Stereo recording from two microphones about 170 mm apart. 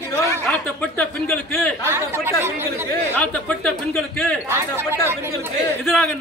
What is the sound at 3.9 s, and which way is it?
Speech, centre (ahead or behind).